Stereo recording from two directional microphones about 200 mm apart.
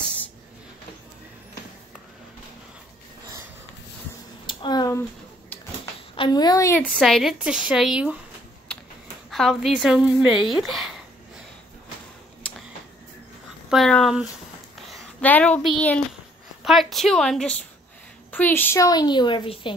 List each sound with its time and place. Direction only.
4.5 s a sound: 20° left (ahead or behind)
6.1 s a woman's voice: 20° left (ahead or behind)
6.8 s a woman's voice: centre (ahead or behind)
9.3 s a woman's voice: centre (ahead or behind)
13.7 s a woman's voice: centre (ahead or behind); by 19.7 s 25° left (ahead or behind)